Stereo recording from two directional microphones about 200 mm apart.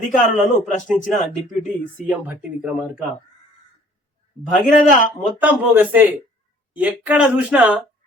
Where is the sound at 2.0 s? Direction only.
5° right (ahead or behind).